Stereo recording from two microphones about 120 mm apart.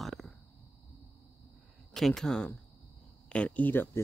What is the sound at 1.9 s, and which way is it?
Speech, centre (ahead or behind).